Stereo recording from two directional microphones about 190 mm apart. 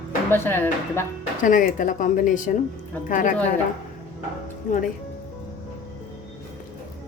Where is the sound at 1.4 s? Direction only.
45° left (ahead or behind).